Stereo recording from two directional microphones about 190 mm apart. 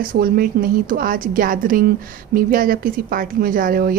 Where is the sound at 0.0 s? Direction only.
50° right (ahead or behind).